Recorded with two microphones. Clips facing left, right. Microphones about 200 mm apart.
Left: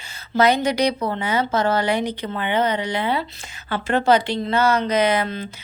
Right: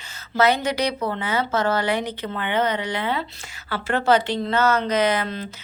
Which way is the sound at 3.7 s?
15° left (ahead or behind).